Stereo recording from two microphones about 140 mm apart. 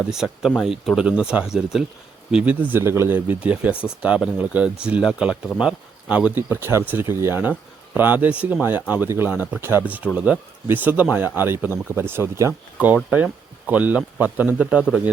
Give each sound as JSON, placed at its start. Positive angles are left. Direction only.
{"t": 0.0, "sound": "speech", "side_deg": -5}